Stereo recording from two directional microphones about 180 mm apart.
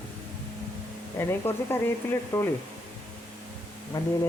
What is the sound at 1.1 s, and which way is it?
Speech, 15° left (ahead or behind).